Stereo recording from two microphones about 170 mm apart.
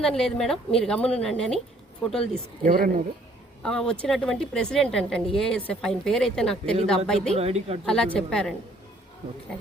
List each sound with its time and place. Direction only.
0.0 s a woman's voice: 5° left (ahead or behind)
2.6 s speech: 55° right (ahead or behind)
3.6 s a woman's voice: 5° left (ahead or behind)
7.3 s speech: 35° right (ahead or behind)
7.9 s a woman's voice: 5° left (ahead or behind)